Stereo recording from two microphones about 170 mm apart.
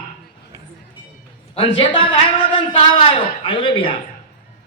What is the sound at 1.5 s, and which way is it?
A man's voice, 30° left (ahead or behind).